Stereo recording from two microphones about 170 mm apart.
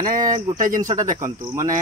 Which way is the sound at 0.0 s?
50° right (ahead or behind).